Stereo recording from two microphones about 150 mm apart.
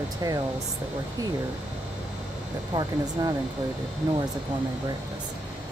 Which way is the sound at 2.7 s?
30° right (ahead or behind).